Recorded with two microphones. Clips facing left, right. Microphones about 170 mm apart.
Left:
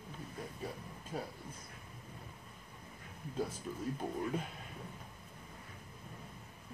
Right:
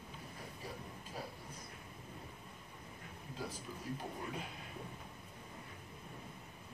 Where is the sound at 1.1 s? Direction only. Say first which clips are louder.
Left 6 dB; 55° left (ahead or behind).